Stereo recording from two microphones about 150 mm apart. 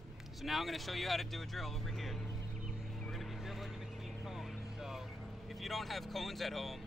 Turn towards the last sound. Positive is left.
turn(degrees=0)  # may be behind; listen again after turning